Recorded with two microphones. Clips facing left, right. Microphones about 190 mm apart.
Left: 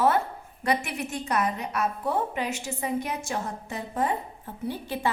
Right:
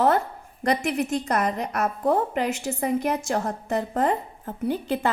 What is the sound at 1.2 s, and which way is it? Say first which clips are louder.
A woman's voice: right 3 dB; 60° right (ahead or behind).